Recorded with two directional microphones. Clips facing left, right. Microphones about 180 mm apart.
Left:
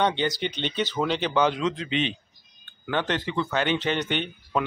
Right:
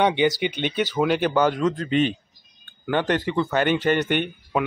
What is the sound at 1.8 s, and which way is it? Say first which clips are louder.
Speech: right 6 dB; 45° right (ahead or behind).